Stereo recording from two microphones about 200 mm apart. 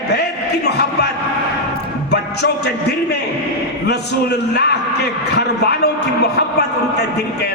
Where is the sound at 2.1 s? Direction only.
55° left (ahead or behind).